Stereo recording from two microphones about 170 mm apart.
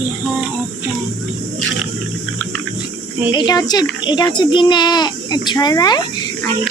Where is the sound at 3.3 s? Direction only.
25° left (ahead or behind).